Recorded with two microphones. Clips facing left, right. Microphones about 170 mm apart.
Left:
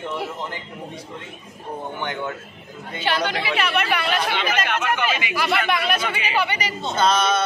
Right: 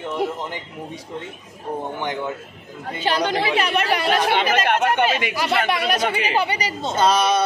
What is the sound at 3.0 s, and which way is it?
Speech, 40° right (ahead or behind).